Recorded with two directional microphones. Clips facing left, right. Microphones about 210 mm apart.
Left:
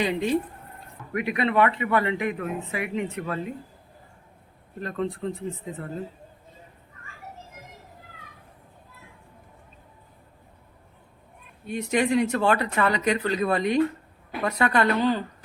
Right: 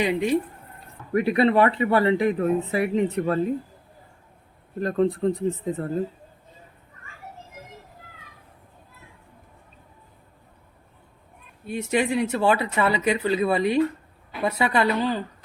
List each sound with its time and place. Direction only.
0.0 s speech: 10° right (ahead or behind)
1.1 s speech: 35° right (ahead or behind)
4.8 s speech: 40° right (ahead or behind)
11.6 s speech: 5° right (ahead or behind)